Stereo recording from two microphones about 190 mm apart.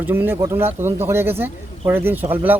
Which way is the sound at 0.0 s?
10° right (ahead or behind).